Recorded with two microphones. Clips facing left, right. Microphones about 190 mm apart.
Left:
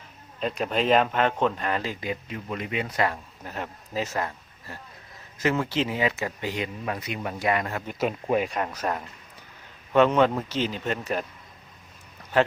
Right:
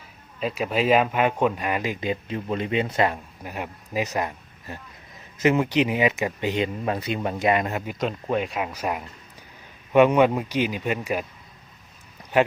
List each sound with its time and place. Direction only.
0.3 s speech: 5° right (ahead or behind); by 7.9 s 20° right (ahead or behind)
7.9 s speech: 5° left (ahead or behind); by 11.3 s 10° right (ahead or behind)